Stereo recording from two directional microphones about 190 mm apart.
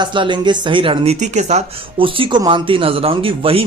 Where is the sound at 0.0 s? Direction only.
25° right (ahead or behind).